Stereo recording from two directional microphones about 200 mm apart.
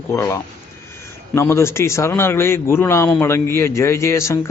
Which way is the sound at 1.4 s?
15° left (ahead or behind).